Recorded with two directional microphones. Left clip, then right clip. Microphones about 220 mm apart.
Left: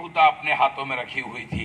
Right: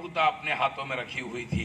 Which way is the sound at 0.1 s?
15° left (ahead or behind).